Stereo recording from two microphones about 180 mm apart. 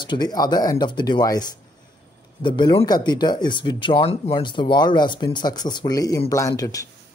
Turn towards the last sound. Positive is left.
turn(degrees=20)  # may be behind; listen again after turning